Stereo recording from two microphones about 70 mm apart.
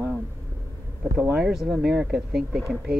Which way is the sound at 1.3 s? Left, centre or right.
Centre.